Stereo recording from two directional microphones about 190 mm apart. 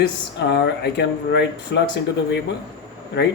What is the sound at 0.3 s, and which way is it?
Speech, 60° left (ahead or behind).